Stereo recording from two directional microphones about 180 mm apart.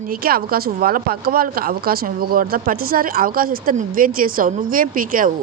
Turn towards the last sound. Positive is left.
turn(degrees=-50)  # may be behind; listen again after turning